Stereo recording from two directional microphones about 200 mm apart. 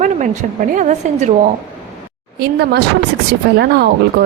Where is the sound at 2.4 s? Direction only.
55° right (ahead or behind).